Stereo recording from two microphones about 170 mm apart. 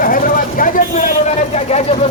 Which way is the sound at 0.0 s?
55° left (ahead or behind).